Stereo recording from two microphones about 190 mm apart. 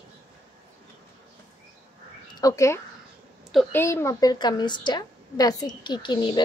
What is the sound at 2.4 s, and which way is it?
Speech, 15° left (ahead or behind).